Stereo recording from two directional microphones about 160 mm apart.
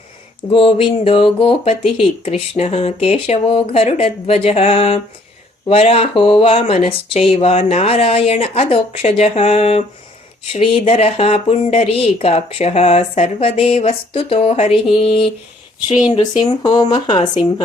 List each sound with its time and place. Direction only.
0.5 s speech: 35° left (ahead or behind)
16.4 s speech: 30° left (ahead or behind)